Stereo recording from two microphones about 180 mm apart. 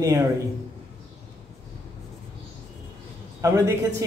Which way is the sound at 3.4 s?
20° right (ahead or behind).